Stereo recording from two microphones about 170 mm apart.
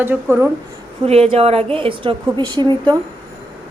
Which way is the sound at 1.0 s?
35° right (ahead or behind).